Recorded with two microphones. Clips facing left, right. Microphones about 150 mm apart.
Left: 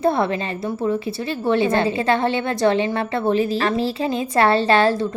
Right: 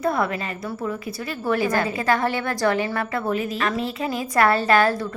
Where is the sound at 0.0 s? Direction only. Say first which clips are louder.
Left 4 dB; 30° left (ahead or behind).